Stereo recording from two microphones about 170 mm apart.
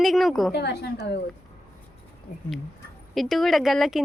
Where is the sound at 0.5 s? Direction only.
75° left (ahead or behind).